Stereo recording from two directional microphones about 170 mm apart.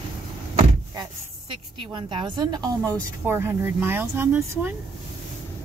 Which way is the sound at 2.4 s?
25° right (ahead or behind).